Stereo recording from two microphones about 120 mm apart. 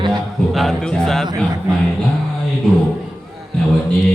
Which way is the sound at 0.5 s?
Centre (ahead or behind).